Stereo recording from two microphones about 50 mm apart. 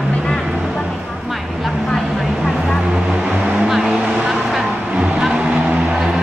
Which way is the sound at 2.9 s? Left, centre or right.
Centre.